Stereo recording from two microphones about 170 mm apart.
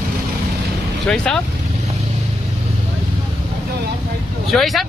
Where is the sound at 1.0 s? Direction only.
5° left (ahead or behind).